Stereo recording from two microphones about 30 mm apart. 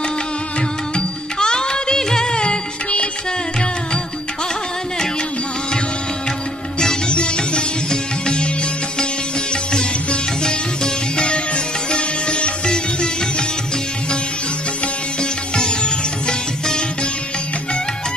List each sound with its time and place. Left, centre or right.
0.6 s music: left
2.4 s music: left
7.1 s music: left
9.5 s music: left
15.1 s music: left